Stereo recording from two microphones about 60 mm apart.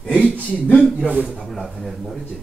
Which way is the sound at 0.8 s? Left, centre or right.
Centre.